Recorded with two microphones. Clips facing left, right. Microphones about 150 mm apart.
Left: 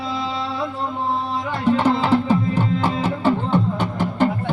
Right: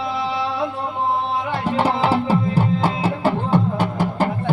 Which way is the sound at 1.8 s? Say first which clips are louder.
Left 1 dB; 10° right (ahead or behind).